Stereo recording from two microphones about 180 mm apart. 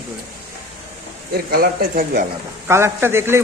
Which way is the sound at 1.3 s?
55° right (ahead or behind).